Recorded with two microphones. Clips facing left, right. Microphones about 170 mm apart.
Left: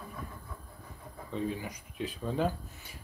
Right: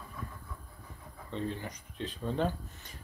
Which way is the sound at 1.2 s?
10° left (ahead or behind).